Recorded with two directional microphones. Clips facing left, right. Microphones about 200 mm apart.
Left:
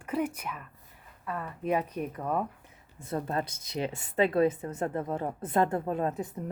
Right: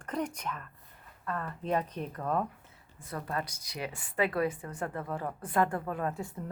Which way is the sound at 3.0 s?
25° left (ahead or behind).